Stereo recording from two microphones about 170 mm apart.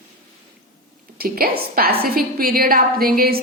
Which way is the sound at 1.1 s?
60° right (ahead or behind).